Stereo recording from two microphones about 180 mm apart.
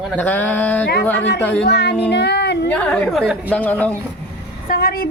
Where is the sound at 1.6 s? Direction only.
75° left (ahead or behind).